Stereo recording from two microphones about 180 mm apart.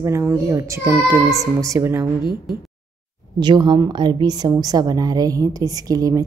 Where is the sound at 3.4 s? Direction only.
25° right (ahead or behind).